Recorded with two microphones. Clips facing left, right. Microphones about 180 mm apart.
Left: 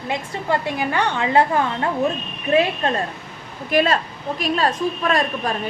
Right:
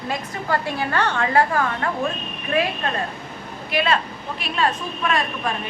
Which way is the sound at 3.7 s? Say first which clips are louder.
Left 3 dB; 45° left (ahead or behind).